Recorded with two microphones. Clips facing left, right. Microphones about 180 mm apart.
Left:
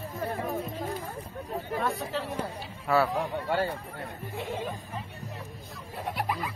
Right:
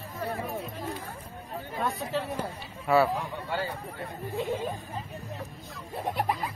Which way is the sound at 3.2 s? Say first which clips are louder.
Left 4 dB; 55° left (ahead or behind).